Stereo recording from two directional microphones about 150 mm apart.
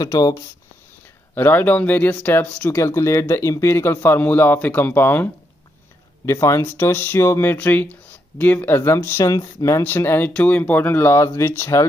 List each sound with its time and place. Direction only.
0.0 s speech: 25° left (ahead or behind)
1.3 s speech: 15° left (ahead or behind)